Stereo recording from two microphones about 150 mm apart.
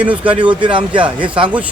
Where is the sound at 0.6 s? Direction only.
35° right (ahead or behind).